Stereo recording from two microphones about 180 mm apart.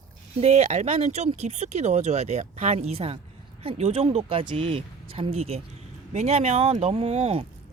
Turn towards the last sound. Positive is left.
turn(degrees=-35)  # may be behind; listen again after turning